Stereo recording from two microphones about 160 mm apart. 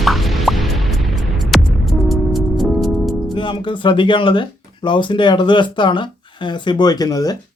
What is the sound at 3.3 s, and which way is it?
Speech, 30° left (ahead or behind).